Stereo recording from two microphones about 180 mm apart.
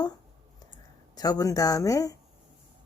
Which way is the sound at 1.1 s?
20° left (ahead or behind).